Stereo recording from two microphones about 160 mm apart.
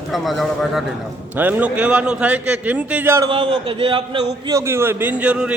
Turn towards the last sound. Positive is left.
turn(degrees=-10)  # may be behind; listen again after turning